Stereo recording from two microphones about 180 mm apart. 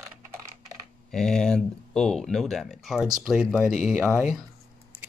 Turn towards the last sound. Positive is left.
turn(degrees=0)  # may be behind; listen again after turning